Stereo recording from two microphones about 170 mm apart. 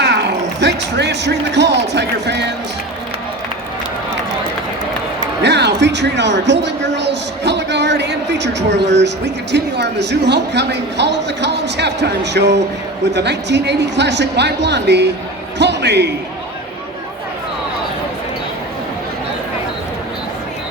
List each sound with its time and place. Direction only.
0.6 s speech: 85° right
5.4 s speech: 90° right